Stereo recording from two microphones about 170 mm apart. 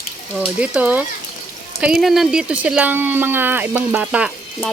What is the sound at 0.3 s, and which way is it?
Speech, 10° right (ahead or behind).